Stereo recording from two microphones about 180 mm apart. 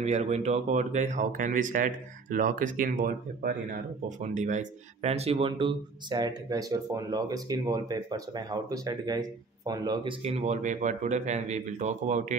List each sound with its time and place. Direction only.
0.0 s speech: 35° right (ahead or behind); by 10.1 s 20° right (ahead or behind)
10.2 s speech: 35° right (ahead or behind)